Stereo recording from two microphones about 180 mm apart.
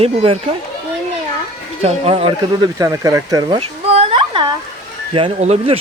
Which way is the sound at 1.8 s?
35° right (ahead or behind).